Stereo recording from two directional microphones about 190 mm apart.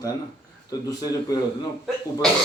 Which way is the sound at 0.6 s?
20° left (ahead or behind).